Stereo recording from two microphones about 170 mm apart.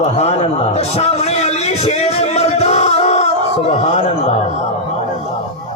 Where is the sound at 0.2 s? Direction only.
40° left (ahead or behind).